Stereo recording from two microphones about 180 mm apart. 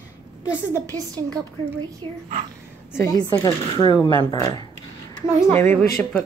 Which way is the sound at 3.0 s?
20° left (ahead or behind).